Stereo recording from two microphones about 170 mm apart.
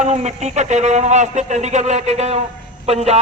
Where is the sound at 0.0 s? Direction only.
45° right (ahead or behind).